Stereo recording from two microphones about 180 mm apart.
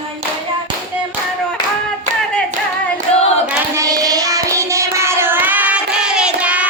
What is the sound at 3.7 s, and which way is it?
Child singing, 20° right (ahead or behind).